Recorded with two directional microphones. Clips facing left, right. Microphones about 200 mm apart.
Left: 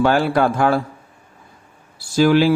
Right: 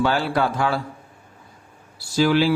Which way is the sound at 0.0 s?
50° left (ahead or behind).